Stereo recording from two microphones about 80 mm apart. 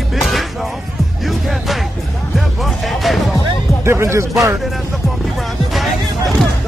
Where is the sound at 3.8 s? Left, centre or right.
Right.